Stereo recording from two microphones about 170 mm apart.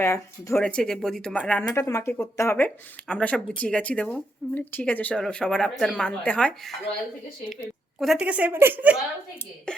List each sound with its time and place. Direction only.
0.0 s speech: 15° left (ahead or behind)
0.5 s speech: 5° left (ahead or behind)
7.9 s a woman's voice: centre (ahead or behind)